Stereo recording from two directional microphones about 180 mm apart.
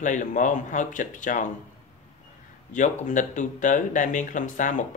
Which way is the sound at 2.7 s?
45° left (ahead or behind).